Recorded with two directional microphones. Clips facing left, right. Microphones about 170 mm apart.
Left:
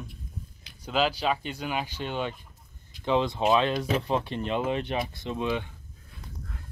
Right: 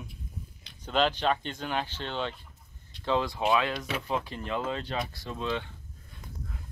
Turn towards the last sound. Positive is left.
turn(degrees=15)  # may be behind; listen again after turning